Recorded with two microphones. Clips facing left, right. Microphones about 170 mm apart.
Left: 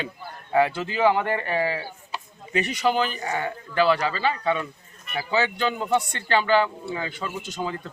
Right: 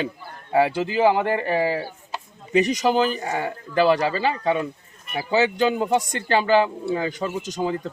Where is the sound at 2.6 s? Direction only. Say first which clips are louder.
Right 3 dB; 40° right (ahead or behind).